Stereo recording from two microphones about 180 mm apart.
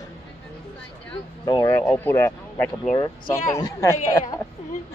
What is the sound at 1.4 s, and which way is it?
A man's voice, 20° left (ahead or behind).